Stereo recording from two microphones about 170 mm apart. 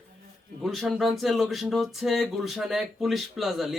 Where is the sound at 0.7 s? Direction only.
Centre (ahead or behind).